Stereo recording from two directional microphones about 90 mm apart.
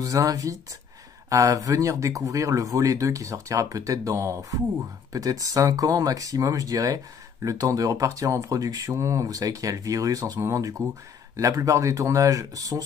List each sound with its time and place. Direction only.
0.0 s speech: 40° right (ahead or behind)